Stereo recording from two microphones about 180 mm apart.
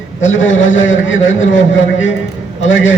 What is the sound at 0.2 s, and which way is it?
A man's voice, 90° left.